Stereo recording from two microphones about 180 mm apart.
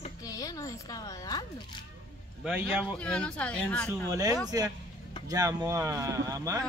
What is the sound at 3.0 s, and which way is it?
Speech, 5° left (ahead or behind).